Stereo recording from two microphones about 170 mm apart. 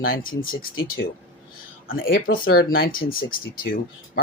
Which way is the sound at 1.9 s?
60° left (ahead or behind).